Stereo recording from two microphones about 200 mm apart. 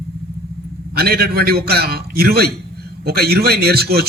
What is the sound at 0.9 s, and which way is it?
A man's voice, 50° right (ahead or behind).